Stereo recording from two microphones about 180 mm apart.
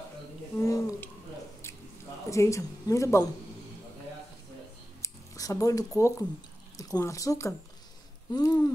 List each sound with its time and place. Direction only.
0.6 s a sound: 15° left (ahead or behind)
2.2 s speech: 15° left (ahead or behind)
5.0 s speech: 15° left (ahead or behind)